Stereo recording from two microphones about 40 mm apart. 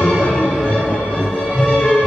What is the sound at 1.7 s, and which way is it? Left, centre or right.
Music, centre.